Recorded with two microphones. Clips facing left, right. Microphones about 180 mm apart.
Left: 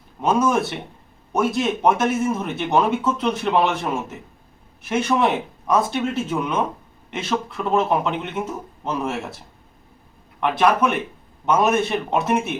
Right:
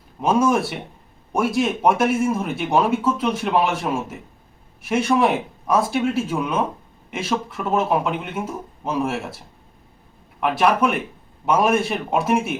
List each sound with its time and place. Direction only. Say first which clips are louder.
0.2 s a man's voice: right 1 dB; 10° right (ahead or behind)
10.4 s a man's voice: even; 5° right (ahead or behind)